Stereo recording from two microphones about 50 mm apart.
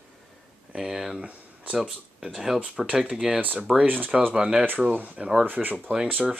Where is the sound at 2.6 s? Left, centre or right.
Centre.